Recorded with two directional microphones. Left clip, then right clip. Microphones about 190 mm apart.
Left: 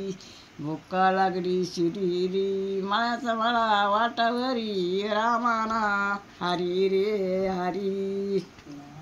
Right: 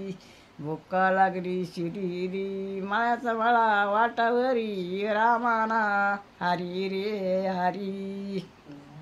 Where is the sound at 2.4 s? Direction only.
15° right (ahead or behind).